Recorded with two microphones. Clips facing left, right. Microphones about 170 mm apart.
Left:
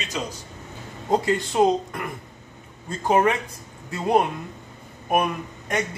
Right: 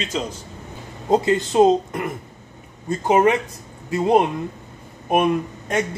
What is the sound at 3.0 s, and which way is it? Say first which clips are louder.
Speech: right 3 dB; 20° right (ahead or behind).